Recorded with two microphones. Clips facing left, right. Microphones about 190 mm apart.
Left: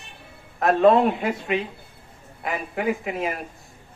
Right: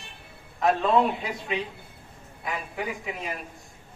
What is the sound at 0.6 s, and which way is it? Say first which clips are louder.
Speech: left 5 dB; 60° left (ahead or behind).